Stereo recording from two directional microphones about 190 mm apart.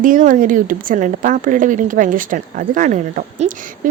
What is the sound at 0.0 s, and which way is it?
Speech, 45° right (ahead or behind).